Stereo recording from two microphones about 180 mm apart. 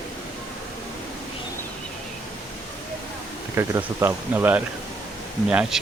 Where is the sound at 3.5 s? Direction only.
15° right (ahead or behind).